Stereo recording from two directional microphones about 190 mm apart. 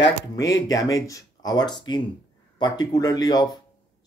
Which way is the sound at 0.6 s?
20° left (ahead or behind).